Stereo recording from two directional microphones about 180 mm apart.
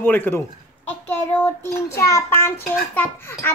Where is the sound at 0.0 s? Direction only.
10° left (ahead or behind).